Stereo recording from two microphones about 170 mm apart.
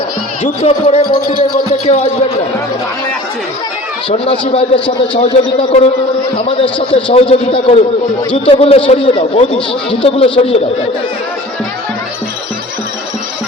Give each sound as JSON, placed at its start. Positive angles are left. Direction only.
{"t": 0.4, "sound": "a man's voice", "side_deg": 35}
{"t": 4.1, "sound": "a man's voice", "side_deg": 35}